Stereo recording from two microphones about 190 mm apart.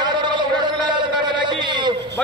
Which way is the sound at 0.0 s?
25° right (ahead or behind).